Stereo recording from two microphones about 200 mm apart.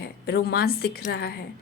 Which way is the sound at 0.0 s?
50° left (ahead or behind).